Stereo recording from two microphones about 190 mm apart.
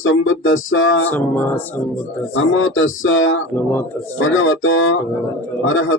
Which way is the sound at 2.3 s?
90° left.